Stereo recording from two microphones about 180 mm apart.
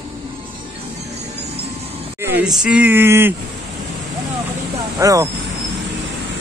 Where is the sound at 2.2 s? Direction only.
10° right (ahead or behind).